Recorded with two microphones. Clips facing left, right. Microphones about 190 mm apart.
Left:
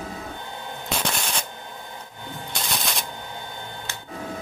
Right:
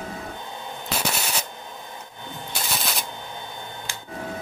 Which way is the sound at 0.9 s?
5° right (ahead or behind).